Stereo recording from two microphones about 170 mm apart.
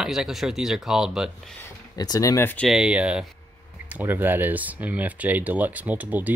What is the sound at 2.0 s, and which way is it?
Speech, 20° left (ahead or behind).